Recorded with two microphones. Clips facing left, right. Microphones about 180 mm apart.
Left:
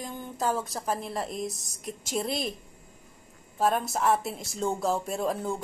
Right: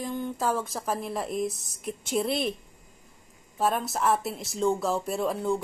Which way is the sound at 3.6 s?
Centre (ahead or behind).